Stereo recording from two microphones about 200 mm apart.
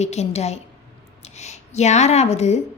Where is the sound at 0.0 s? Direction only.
35° left (ahead or behind).